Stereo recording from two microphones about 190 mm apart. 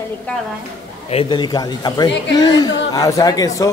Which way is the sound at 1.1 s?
25° left (ahead or behind).